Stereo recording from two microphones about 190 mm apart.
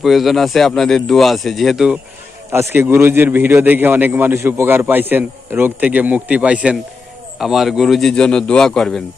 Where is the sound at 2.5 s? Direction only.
10° right (ahead or behind).